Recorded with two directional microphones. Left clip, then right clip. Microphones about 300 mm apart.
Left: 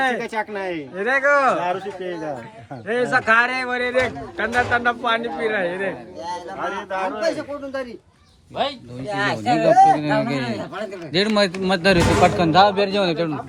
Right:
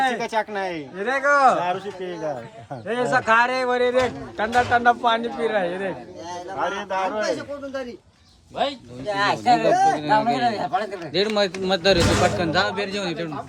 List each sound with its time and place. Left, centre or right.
0.0 s a man's voice: centre
6.6 s a man's voice: right
8.6 s speech: left
9.0 s a man's voice: centre
9.6 s speech: left
10.4 s a man's voice: centre
11.1 s speech: left